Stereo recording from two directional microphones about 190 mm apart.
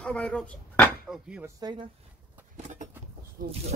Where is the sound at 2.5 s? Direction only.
40° right (ahead or behind).